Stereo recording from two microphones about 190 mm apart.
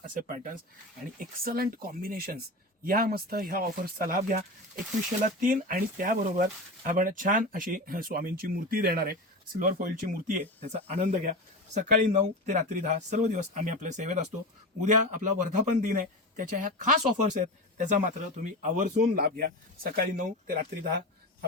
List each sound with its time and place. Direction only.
0.0 s speech: 45° right (ahead or behind)
19.2 s speech: 55° right (ahead or behind)